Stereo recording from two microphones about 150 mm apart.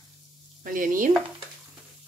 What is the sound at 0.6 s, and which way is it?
Speech, 65° right (ahead or behind).